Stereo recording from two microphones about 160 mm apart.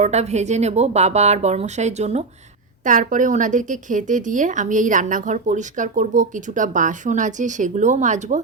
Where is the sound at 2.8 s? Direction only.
55° right (ahead or behind).